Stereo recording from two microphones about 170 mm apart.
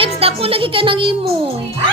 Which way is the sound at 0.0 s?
35° right (ahead or behind).